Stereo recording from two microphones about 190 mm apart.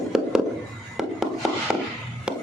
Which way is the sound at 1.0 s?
Centre (ahead or behind).